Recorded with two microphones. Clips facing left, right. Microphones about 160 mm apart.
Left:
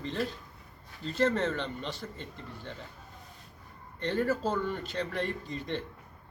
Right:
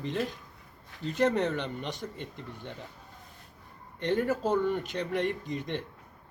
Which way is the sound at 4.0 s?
15° right (ahead or behind).